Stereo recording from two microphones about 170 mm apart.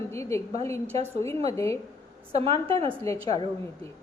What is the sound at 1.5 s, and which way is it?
Speech, 20° left (ahead or behind).